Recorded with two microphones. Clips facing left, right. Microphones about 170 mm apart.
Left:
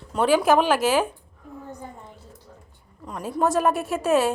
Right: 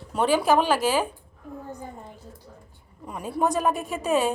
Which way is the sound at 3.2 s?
5° left (ahead or behind).